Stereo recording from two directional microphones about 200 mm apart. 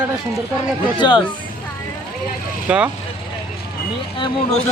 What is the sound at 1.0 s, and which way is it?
Speech, 20° left (ahead or behind).